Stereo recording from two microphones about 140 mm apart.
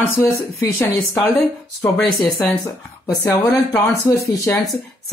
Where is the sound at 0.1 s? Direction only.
20° left (ahead or behind).